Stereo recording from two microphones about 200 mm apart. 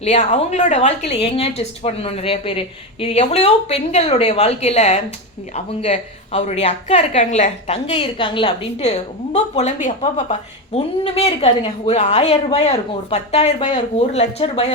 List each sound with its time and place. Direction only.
0.0 s a woman's voice: 30° left (ahead or behind)